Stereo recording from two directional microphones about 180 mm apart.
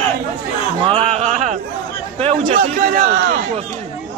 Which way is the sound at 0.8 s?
35° right (ahead or behind).